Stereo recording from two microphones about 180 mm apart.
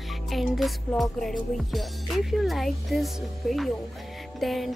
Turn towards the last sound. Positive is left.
turn(degrees=0)  # may be behind; listen again after turning